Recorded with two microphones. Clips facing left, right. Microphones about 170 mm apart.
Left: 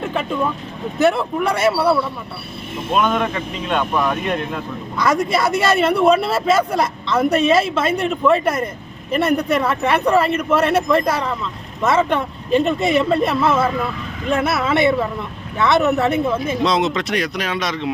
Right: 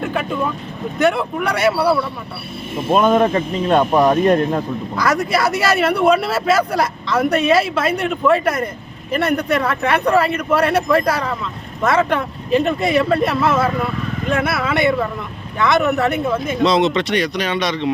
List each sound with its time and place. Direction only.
0.0 s vehicle: centre (ahead or behind)
0.9 s a man's voice: centre (ahead or behind)
2.9 s speech: 35° right (ahead or behind)
4.9 s a man's voice: centre (ahead or behind)